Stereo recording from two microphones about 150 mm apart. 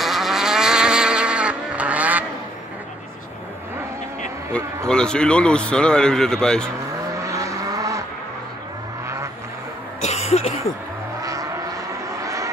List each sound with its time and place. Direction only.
0.0 s vehicle: centre (ahead or behind)
4.5 s speech: 5° left (ahead or behind)
7.2 s vehicle: 20° right (ahead or behind)
10.0 s a sound: 45° left (ahead or behind)
11.2 s vehicle: 25° right (ahead or behind)